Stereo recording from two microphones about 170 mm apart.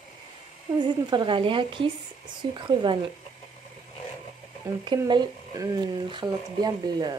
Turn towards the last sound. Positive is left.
turn(degrees=-25)  # may be behind; listen again after turning